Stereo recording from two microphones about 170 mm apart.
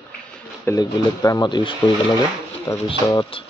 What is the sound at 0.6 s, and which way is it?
Speech, 20° left (ahead or behind).